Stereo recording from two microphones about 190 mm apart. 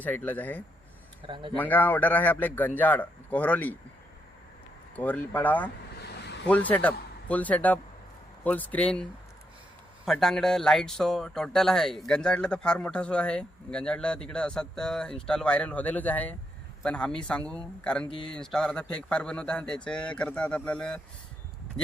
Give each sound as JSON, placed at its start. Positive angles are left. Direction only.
{"t": 0.0, "sound": "a man's voice", "side_deg": 10}
{"t": 1.3, "sound": "speech", "side_deg": -25}
{"t": 1.5, "sound": "a man's voice", "side_deg": 10}
{"t": 4.9, "sound": "a man's voice", "side_deg": 10}
{"t": 6.0, "sound": "vehicle", "side_deg": 60}
{"t": 6.5, "sound": "a man's voice", "side_deg": 10}
{"t": 10.1, "sound": "speech", "side_deg": 0}